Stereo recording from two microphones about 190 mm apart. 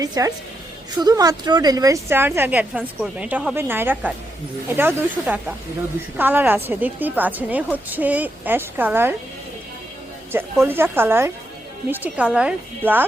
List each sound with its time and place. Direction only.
0.0 s a woman's voice: 20° right (ahead or behind)
10.3 s a woman's voice: 10° right (ahead or behind)